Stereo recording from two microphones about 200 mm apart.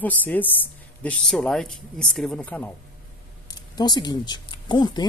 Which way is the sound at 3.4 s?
20° left (ahead or behind).